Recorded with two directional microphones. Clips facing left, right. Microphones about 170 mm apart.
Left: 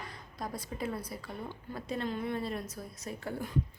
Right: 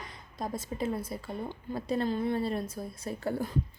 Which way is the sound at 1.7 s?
35° right (ahead or behind).